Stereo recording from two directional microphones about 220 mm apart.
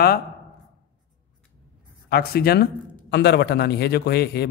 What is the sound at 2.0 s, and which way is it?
A man's voice, 45° left (ahead or behind).